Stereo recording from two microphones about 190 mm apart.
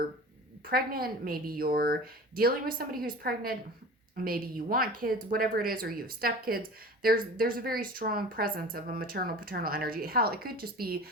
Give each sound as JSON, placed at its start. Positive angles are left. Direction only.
{"t": 0.7, "sound": "a woman's voice", "side_deg": -50}